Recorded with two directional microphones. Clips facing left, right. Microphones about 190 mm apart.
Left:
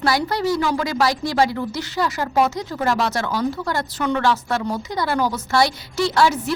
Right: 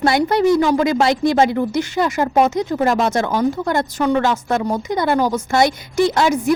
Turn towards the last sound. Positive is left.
turn(degrees=-20)  # may be behind; listen again after turning